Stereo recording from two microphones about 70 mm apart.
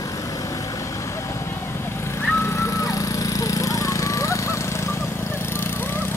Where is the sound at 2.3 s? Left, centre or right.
Left.